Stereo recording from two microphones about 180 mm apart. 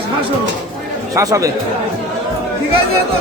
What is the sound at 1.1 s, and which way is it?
Speech, 20° right (ahead or behind).